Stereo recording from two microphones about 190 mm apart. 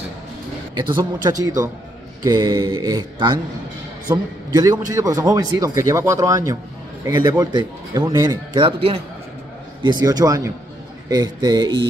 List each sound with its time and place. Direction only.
0.7 s a man's voice: 25° right (ahead or behind)